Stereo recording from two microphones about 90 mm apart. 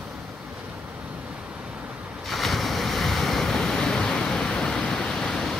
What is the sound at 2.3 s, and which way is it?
Waves, centre (ahead or behind).